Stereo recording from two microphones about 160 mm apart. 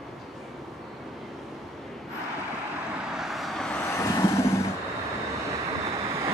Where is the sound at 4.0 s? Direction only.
20° left (ahead or behind).